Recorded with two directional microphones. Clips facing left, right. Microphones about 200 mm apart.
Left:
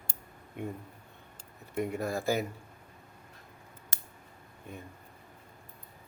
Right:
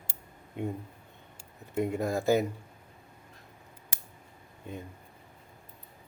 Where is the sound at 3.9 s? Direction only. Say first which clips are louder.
Right 4 dB; 15° right (ahead or behind).